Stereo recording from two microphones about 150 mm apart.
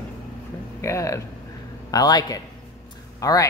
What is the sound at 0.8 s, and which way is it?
A woman's voice, 20° left (ahead or behind).